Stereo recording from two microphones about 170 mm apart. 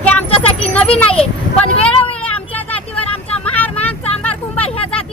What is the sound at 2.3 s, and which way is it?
Vehicle, 10° left (ahead or behind).